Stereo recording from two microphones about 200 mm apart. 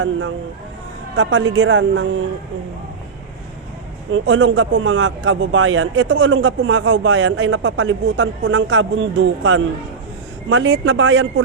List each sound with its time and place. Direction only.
0.0 s speech: 80° right
1.1 s speech: 65° right (ahead or behind)
4.1 s a man's voice: 75° right (ahead or behind)